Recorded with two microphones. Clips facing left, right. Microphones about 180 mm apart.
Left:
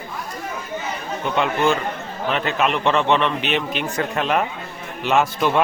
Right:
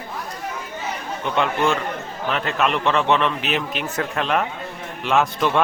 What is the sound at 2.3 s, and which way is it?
A man's voice, centre (ahead or behind).